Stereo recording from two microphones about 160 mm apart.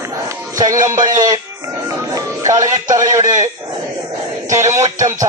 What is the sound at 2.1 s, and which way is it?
Music, 20° right (ahead or behind).